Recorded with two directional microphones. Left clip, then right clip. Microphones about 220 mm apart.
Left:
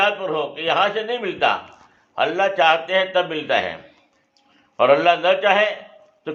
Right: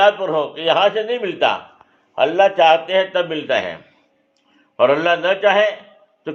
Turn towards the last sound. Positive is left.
turn(degrees=-40)  # may be behind; listen again after turning